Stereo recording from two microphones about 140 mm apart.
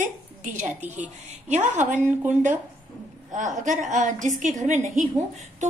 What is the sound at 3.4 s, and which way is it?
Speech, 60° right (ahead or behind).